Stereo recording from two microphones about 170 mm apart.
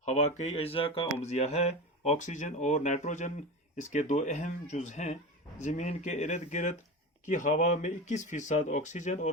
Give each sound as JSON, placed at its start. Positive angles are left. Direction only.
{"t": 0.0, "sound": "speech", "side_deg": 45}